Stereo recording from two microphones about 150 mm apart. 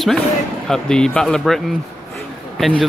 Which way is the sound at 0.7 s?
5° left (ahead or behind).